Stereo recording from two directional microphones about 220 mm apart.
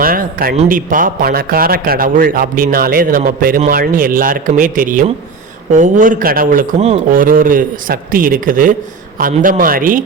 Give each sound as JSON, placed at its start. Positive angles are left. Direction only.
{"t": 0.0, "sound": "a man's voice", "side_deg": -40}